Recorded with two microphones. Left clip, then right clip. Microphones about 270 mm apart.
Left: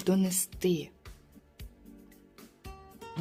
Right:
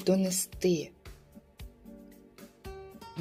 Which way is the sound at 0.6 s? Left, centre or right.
Centre.